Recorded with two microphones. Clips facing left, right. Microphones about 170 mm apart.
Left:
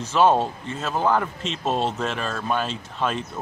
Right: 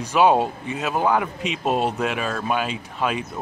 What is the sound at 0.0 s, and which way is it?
Speech, 10° right (ahead or behind).